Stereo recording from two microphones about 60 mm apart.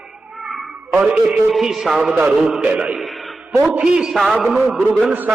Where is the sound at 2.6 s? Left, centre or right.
Centre.